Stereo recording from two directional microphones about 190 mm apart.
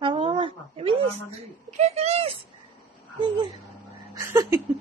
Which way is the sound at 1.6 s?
35° right (ahead or behind).